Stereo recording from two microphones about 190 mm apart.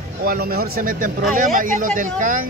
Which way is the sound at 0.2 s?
50° right (ahead or behind).